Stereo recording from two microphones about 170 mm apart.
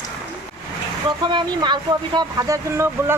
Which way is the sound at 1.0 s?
25° right (ahead or behind).